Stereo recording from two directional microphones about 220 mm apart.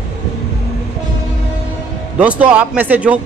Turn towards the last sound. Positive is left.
turn(degrees=-5)  # may be behind; listen again after turning